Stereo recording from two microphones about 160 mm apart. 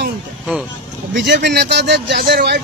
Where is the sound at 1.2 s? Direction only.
90° right.